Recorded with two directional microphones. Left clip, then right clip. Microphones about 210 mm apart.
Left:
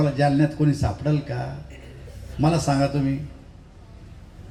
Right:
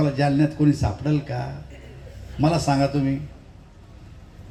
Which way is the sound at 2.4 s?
30° right (ahead or behind).